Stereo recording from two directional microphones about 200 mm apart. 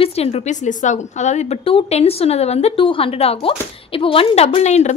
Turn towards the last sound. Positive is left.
turn(degrees=35)  # may be behind; listen again after turning